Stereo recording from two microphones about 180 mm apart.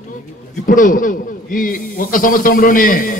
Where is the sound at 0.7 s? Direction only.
45° left (ahead or behind).